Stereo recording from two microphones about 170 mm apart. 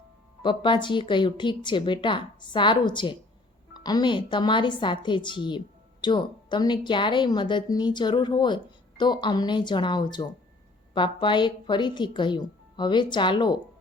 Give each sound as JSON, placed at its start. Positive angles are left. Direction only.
{"t": 0.4, "sound": "a woman's voice", "side_deg": 30}